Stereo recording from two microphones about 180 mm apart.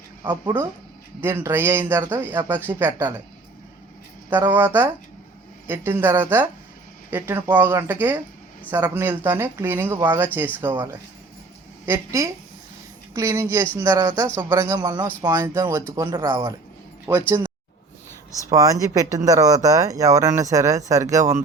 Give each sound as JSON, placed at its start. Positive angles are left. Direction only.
{"t": 0.2, "sound": "speech", "side_deg": -15}
{"t": 4.3, "sound": "speech", "side_deg": -10}
{"t": 11.9, "sound": "speech", "side_deg": -15}
{"t": 16.3, "sound": "speech", "side_deg": -25}
{"t": 17.2, "sound": "speech", "side_deg": -15}